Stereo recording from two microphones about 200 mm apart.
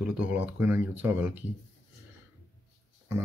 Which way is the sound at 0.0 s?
5° right (ahead or behind).